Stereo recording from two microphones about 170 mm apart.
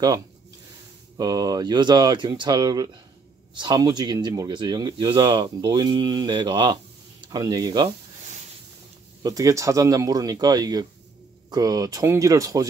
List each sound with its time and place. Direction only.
1.1 s speech: 20° right (ahead or behind)
9.2 s speech: 20° right (ahead or behind)